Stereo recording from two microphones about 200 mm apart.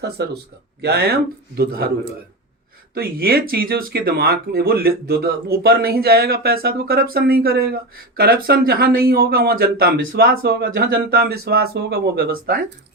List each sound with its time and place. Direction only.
0.2 s a man's voice: 55° right (ahead or behind)
2.9 s speech: 50° right (ahead or behind)